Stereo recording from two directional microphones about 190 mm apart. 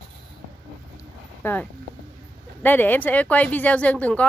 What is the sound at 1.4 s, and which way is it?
Speech, 10° left (ahead or behind).